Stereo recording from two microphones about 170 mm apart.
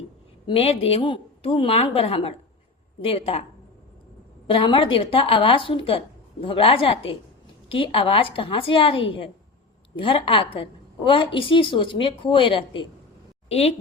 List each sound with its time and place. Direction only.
0.4 s a woman's voice: 35° left (ahead or behind)
4.4 s a woman's voice: 30° left (ahead or behind)